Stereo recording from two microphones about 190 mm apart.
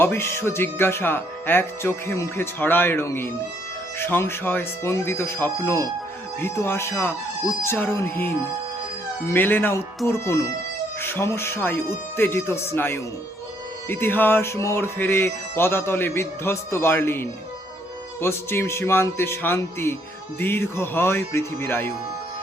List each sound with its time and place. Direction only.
0.0 s music: 10° left (ahead or behind)